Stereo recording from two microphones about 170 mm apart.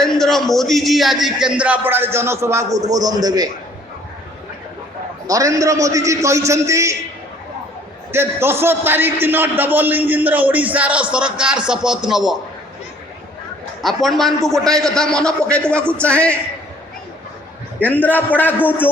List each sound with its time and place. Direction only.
0.0 s a man's voice: centre (ahead or behind); by 3.5 s 20° right (ahead or behind)
5.3 s a man's voice: 20° right (ahead or behind)
8.1 s a man's voice: 15° right (ahead or behind)
13.8 s a man's voice: centre (ahead or behind)
17.7 s a man's voice: 10° left (ahead or behind)